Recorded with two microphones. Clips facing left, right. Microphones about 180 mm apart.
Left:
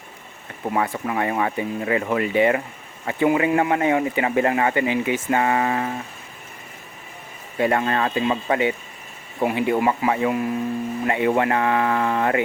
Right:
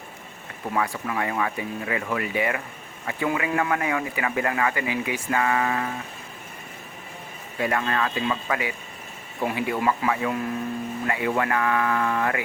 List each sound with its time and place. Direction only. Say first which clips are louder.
0.7 s speech: left 3 dB; 25° left (ahead or behind)
7.6 s speech: left 4 dB; 30° left (ahead or behind)